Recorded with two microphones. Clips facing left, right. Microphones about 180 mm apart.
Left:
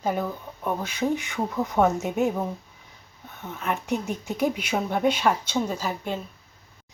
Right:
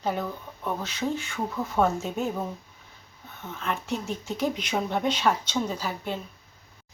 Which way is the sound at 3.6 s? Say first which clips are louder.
Left 3 dB; 15° left (ahead or behind).